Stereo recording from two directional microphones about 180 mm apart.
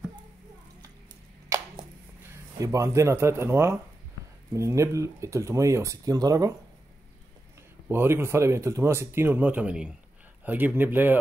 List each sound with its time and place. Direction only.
2.6 s speech: 15° right (ahead or behind)
7.9 s speech: 15° right (ahead or behind)